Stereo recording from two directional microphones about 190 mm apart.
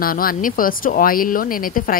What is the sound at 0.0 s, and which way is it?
Speech, 50° left (ahead or behind).